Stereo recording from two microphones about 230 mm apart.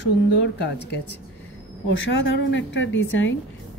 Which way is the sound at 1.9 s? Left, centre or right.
Left.